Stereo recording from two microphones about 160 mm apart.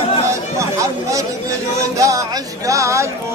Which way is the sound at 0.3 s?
20° right (ahead or behind).